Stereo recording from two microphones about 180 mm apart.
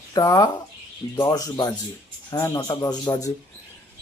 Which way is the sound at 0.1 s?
20° left (ahead or behind).